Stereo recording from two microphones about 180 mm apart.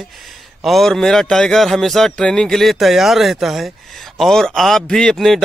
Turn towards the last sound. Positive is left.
turn(degrees=0)  # may be behind; listen again after turning